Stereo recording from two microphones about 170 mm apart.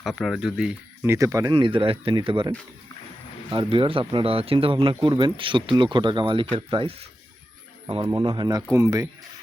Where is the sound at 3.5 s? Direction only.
30° right (ahead or behind).